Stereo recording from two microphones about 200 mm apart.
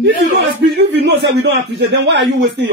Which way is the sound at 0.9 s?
55° right (ahead or behind).